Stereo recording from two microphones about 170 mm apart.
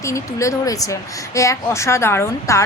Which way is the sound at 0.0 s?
15° left (ahead or behind).